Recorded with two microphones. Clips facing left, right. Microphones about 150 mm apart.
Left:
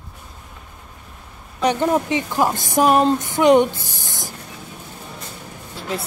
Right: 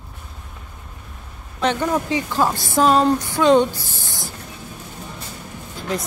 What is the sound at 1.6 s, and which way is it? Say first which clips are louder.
A woman's voice: left 2 dB; 20° left (ahead or behind).